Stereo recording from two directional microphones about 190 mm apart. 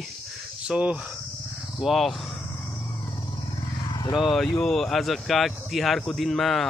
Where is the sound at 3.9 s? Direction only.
20° left (ahead or behind).